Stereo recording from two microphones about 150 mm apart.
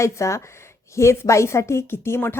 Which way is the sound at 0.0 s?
20° left (ahead or behind).